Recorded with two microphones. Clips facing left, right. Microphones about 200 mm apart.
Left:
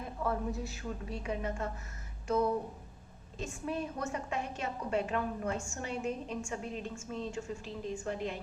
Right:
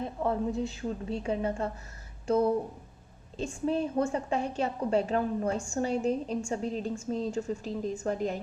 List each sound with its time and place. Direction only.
0.0 s a woman's voice: 25° right (ahead or behind); by 8.4 s 40° right (ahead or behind)